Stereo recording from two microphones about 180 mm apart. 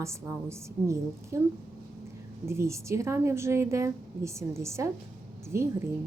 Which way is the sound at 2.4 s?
15° right (ahead or behind).